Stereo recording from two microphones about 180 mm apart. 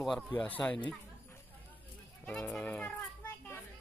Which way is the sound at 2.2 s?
5° left (ahead or behind).